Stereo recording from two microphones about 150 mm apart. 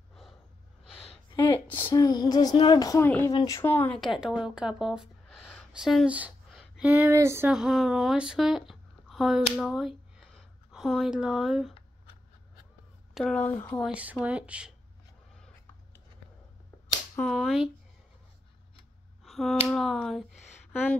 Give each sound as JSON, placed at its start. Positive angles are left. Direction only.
{"t": 1.3, "sound": "speech", "side_deg": 15}
{"t": 3.6, "sound": "speech", "side_deg": 10}
{"t": 4.0, "sound": "speech", "side_deg": -5}
{"t": 7.5, "sound": "speech", "side_deg": -5}
{"t": 13.1, "sound": "speech", "side_deg": 5}
{"t": 13.8, "sound": "speech", "side_deg": -10}
{"t": 17.2, "sound": "speech", "side_deg": 5}
{"t": 19.2, "sound": "a sound", "side_deg": 0}
{"t": 19.7, "sound": "speech", "side_deg": 5}